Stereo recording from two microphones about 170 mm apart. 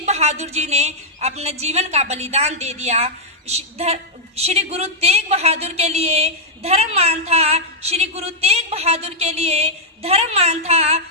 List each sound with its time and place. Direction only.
0.0 s a woman's voice: 40° right (ahead or behind)